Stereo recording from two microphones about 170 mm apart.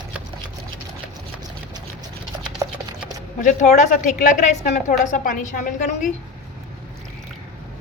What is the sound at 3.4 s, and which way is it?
A woman's voice, 45° left (ahead or behind).